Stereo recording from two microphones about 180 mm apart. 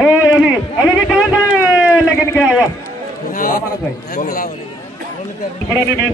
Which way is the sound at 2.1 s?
15° left (ahead or behind).